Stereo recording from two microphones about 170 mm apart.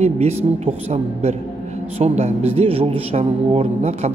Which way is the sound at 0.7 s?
40° right (ahead or behind).